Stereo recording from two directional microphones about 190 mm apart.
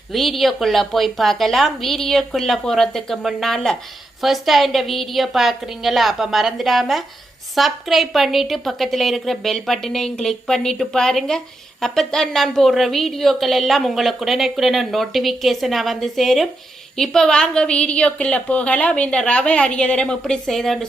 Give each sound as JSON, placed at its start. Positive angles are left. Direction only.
{"t": 0.1, "sound": "a woman's voice", "side_deg": 0}